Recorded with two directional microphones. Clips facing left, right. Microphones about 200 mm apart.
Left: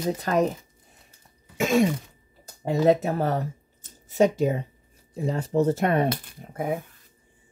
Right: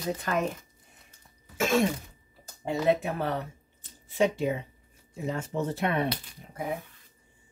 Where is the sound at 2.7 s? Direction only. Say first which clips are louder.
Left 5 dB; 40° left (ahead or behind).